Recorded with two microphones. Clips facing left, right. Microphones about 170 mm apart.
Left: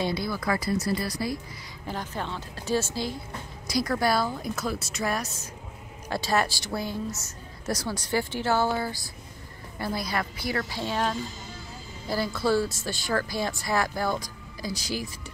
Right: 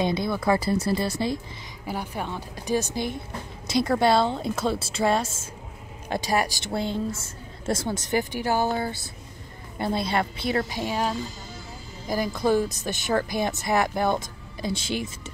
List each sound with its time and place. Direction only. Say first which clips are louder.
0.0 s speech: right 4 dB; 20° right (ahead or behind)
1.9 s a woman's voice: right 2 dB; 10° right (ahead or behind)